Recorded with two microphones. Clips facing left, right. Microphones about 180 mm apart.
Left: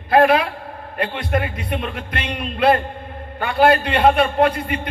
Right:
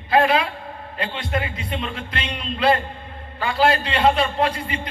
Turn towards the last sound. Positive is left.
turn(degrees=60)  # may be behind; listen again after turning